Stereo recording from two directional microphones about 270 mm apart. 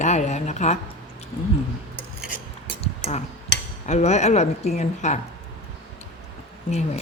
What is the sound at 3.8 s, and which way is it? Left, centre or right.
Speech, left.